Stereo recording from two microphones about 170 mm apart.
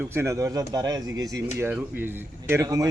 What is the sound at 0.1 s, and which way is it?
Speech, 15° right (ahead or behind).